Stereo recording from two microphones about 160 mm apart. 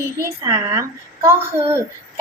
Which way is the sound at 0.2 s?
15° right (ahead or behind).